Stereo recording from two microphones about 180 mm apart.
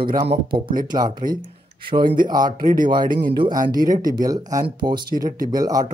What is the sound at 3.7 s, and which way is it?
Speech, 20° right (ahead or behind).